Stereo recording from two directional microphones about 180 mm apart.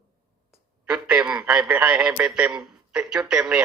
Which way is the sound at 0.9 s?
5° right (ahead or behind).